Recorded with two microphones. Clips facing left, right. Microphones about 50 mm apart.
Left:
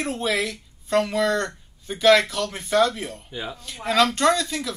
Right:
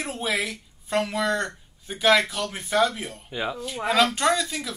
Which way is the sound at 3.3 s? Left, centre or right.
Right.